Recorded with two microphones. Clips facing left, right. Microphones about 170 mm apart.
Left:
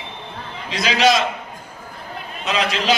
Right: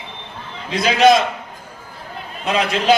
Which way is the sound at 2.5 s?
55° right (ahead or behind).